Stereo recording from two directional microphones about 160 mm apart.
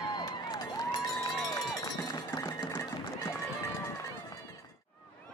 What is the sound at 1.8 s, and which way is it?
Run, 25° left (ahead or behind).